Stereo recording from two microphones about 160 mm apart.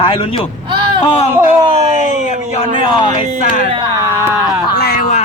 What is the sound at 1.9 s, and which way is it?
Speech, 50° left (ahead or behind).